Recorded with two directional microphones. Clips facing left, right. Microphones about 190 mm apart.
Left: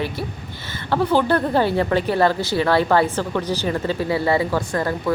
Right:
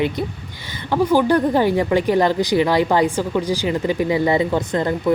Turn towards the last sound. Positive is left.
turn(degrees=-20)  # may be behind; listen again after turning